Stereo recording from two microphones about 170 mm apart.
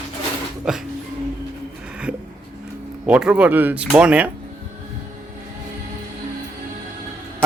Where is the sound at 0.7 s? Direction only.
5° right (ahead or behind).